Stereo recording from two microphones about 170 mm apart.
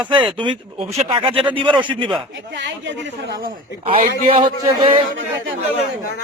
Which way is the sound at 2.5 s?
90° right.